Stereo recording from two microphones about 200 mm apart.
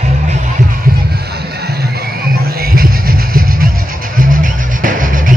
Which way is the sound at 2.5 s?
50° right (ahead or behind).